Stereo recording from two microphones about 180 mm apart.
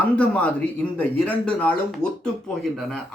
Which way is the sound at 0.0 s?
10° left (ahead or behind).